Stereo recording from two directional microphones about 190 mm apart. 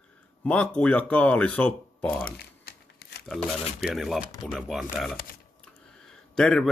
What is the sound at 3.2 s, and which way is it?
A man's voice, centre (ahead or behind).